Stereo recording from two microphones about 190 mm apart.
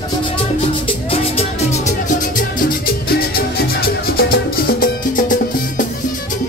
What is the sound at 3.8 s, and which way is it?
Music, 50° left (ahead or behind).